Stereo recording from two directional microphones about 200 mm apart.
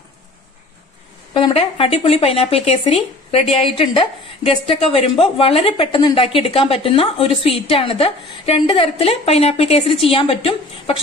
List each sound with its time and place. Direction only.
1.3 s a woman's voice: 25° left (ahead or behind)